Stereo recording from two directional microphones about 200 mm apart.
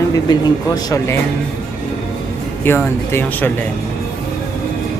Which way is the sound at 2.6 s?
10° left (ahead or behind).